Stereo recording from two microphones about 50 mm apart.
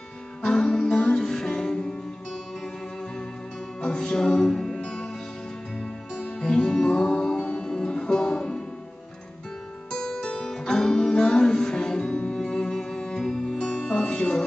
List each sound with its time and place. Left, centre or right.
0.4 s music: centre
3.8 s music: centre
9.8 s music: centre